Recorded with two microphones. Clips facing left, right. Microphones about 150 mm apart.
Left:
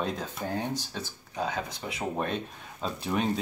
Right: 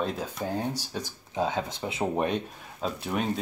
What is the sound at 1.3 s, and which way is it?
Speech, 25° right (ahead or behind).